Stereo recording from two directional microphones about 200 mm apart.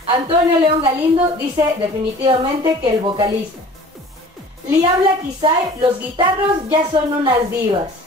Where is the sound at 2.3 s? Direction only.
20° right (ahead or behind).